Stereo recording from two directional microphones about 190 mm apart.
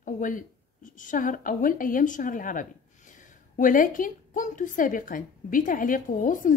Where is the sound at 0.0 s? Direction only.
45° left (ahead or behind).